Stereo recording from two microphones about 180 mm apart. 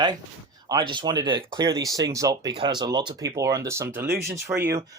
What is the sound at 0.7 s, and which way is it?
Speech, 25° right (ahead or behind).